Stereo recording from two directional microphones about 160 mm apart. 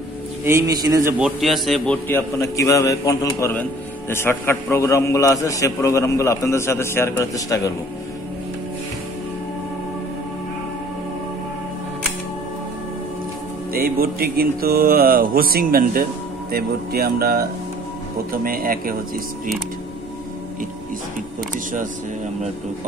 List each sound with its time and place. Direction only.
0.5 s a man's voice: 20° right (ahead or behind)
1.2 s a man's voice: centre (ahead or behind)
2.0 s a man's voice: 15° left (ahead or behind)
13.7 s speech: 70° right (ahead or behind)